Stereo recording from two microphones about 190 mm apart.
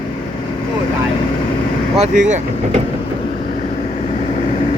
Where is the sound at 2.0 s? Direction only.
40° right (ahead or behind).